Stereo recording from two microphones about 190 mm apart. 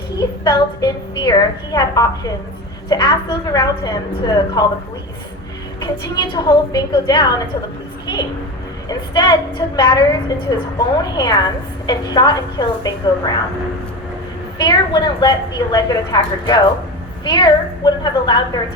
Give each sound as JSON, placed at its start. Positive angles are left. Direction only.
{"t": 0.2, "sound": "a woman's voice", "side_deg": 20}
{"t": 5.8, "sound": "a woman's voice", "side_deg": 20}
{"t": 8.0, "sound": "a sound", "side_deg": 20}
{"t": 8.9, "sound": "a woman's voice", "side_deg": 25}
{"t": 14.6, "sound": "a woman's voice", "side_deg": 25}